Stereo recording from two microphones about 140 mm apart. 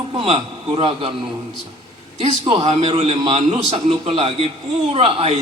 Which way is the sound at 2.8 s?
40° right (ahead or behind).